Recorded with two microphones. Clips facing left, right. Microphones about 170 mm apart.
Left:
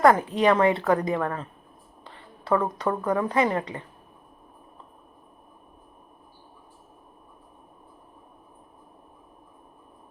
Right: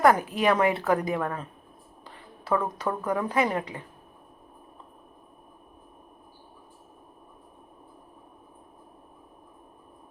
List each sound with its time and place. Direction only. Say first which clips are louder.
0.2 s speech: left 3 dB; 25° left (ahead or behind)
0.4 s speech: left 3 dB; 5° right (ahead or behind)
2.4 s a sound: left 3 dB; 5° right (ahead or behind)
2.7 s speech: left 3 dB; 5° right (ahead or behind)